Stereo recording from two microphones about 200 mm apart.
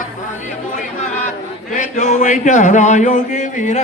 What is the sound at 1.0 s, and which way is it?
Speech, 40° left (ahead or behind).